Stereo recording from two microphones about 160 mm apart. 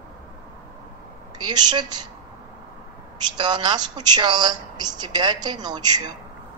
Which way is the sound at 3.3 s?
30° right (ahead or behind).